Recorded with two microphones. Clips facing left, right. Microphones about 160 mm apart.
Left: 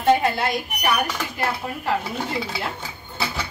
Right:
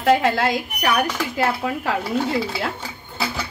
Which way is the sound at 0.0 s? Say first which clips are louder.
Right 2 dB; 90° right.